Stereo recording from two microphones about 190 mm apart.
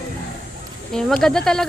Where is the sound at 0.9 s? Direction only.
5° left (ahead or behind).